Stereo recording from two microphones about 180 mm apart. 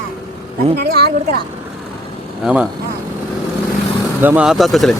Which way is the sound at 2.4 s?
5° right (ahead or behind).